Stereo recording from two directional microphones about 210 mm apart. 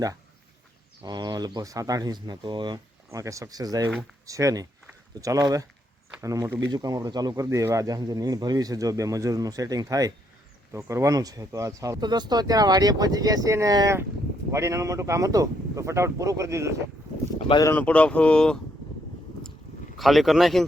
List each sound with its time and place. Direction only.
1.0 s speech: 20° right (ahead or behind)
17.3 s speech: 20° left (ahead or behind); by 18.6 s 5° left (ahead or behind)
20.0 s speech: centre (ahead or behind)